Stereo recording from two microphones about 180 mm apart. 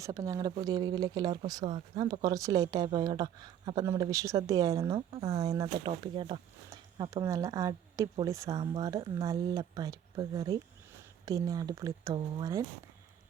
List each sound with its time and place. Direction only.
0.0 s speech: 20° right (ahead or behind)